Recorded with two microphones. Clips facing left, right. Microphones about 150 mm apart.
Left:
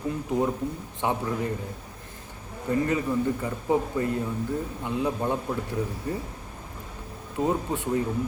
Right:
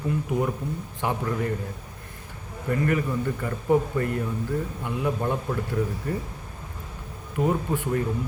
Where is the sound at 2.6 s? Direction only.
20° left (ahead or behind).